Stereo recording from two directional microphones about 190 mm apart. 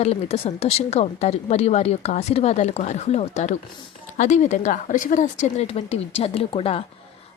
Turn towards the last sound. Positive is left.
turn(degrees=30)  # may be behind; listen again after turning